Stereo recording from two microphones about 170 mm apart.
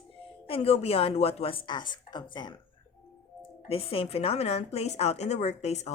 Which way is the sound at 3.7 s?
35° left (ahead or behind).